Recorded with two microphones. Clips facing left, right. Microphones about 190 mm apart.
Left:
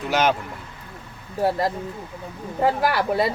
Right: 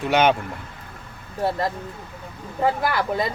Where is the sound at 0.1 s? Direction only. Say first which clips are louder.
Right 2 dB; centre (ahead or behind).